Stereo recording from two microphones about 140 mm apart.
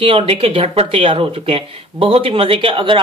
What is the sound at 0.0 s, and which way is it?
Speech, 40° right (ahead or behind).